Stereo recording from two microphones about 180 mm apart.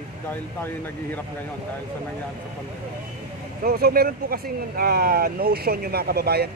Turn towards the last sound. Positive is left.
turn(degrees=-60)  # may be behind; listen again after turning